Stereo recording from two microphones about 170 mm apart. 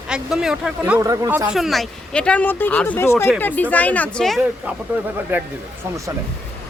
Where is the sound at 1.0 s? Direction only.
20° right (ahead or behind).